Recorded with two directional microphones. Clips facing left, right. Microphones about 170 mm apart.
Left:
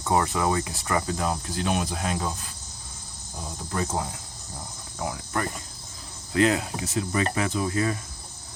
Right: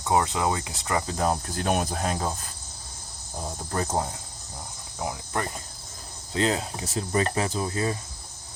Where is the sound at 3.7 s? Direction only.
40° right (ahead or behind).